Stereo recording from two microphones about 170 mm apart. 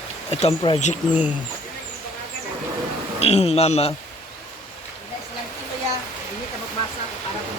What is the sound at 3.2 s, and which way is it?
Speech, 35° left (ahead or behind).